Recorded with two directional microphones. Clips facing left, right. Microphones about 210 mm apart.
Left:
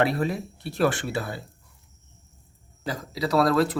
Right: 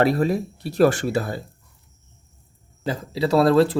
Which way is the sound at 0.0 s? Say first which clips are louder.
Right 5 dB; 40° right (ahead or behind).